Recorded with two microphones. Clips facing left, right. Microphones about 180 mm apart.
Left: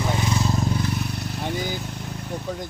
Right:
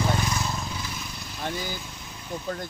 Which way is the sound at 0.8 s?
65° left (ahead or behind).